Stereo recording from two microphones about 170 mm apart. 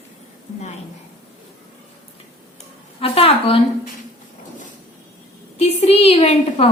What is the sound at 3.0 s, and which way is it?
Speech, 35° left (ahead or behind).